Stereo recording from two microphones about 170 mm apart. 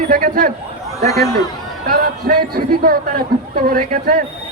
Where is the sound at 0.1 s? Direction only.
55° right (ahead or behind).